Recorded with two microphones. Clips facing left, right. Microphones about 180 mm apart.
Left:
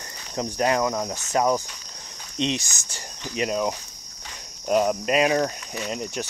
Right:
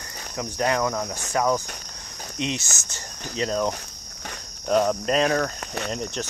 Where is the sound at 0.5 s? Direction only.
20° left (ahead or behind).